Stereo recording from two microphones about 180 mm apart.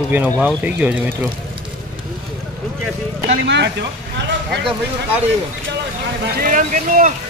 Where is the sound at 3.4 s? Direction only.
75° right (ahead or behind).